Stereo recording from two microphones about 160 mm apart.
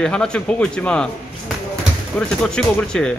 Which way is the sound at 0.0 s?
5° left (ahead or behind).